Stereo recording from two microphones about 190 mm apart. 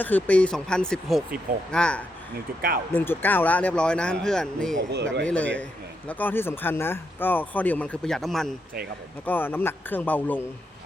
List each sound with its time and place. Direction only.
0.0 s speech: 10° left (ahead or behind)
2.6 s speech: 50° right (ahead or behind)
2.9 s speech: 10° left (ahead or behind)